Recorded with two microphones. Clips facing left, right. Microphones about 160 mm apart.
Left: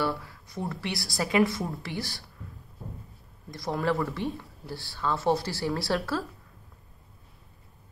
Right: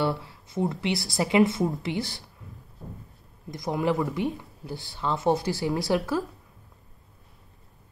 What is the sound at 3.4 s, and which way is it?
Speech, 20° right (ahead or behind).